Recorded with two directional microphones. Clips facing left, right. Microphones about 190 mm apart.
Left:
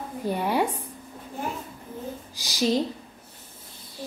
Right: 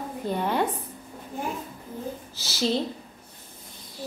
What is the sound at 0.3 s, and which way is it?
Speech, 10° left (ahead or behind).